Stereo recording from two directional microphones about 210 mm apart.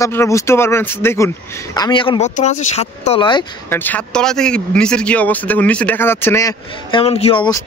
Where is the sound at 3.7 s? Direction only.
10° left (ahead or behind).